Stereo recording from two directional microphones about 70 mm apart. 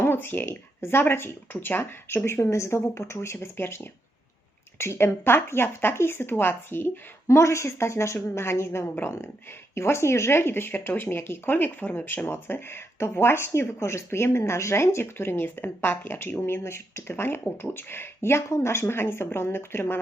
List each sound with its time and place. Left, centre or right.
0.0 s speech: left
4.8 s speech: left
7.3 s speech: left